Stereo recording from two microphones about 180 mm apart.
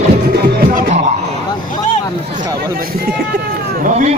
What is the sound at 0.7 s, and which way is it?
Music, 50° right (ahead or behind).